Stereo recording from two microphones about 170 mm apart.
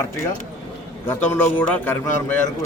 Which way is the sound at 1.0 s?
10° left (ahead or behind).